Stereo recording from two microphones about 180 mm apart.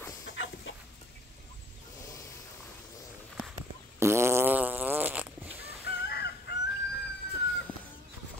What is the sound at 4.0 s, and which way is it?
Fart, 15° right (ahead or behind).